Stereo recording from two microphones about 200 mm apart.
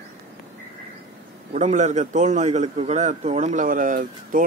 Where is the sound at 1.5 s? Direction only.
35° right (ahead or behind).